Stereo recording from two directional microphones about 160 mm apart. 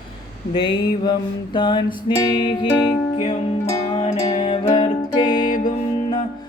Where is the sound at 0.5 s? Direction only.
30° left (ahead or behind).